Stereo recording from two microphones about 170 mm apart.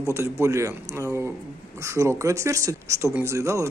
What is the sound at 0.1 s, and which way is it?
Speech, 15° right (ahead or behind).